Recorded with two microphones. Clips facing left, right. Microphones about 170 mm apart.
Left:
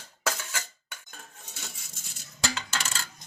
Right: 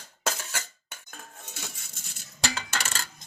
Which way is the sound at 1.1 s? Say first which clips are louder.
Right 7 dB; 60° right (ahead or behind).